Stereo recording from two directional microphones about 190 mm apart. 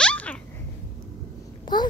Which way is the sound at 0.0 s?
5° left (ahead or behind).